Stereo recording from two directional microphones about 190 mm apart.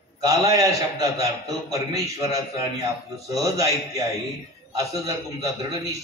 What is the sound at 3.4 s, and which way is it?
Speech, 15° right (ahead or behind).